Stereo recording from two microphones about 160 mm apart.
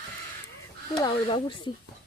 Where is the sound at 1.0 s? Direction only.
30° left (ahead or behind).